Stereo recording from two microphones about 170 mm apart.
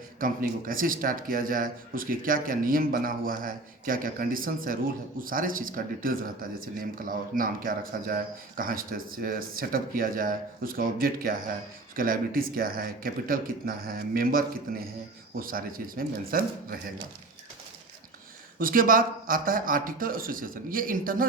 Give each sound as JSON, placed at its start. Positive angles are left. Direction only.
{"t": 0.2, "sound": "speech", "side_deg": -55}
{"t": 18.6, "sound": "speech", "side_deg": -55}